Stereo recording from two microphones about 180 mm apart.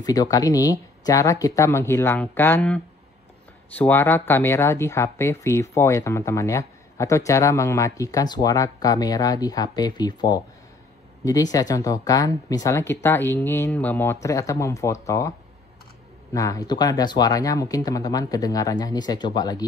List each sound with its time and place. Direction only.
0.0 s speech: 20° left (ahead or behind)
11.5 s speech: 20° left (ahead or behind)
16.3 s speech: 20° left (ahead or behind)